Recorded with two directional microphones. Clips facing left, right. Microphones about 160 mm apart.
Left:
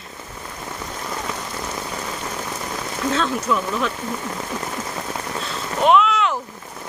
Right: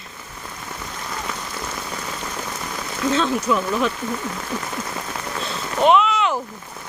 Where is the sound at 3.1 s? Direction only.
5° right (ahead or behind).